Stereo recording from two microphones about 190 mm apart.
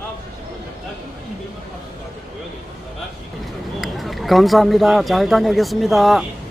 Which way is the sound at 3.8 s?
Centre (ahead or behind).